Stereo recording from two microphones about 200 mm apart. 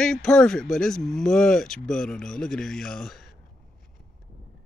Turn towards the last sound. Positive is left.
turn(degrees=0)  # may be behind; listen again after turning